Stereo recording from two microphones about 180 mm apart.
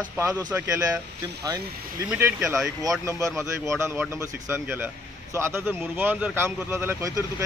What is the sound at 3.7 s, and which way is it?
Speech, 15° right (ahead or behind).